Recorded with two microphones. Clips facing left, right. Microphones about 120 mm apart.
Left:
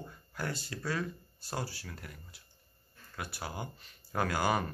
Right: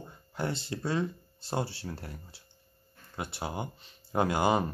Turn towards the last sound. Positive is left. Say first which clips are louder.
# right 5 dB
turn(degrees=-20)  # may be behind; listen again after turning